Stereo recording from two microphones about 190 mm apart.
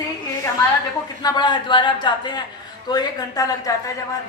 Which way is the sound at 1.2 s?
20° left (ahead or behind).